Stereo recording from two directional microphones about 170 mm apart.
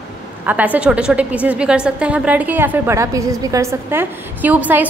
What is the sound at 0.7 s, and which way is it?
A woman's voice, 5° right (ahead or behind).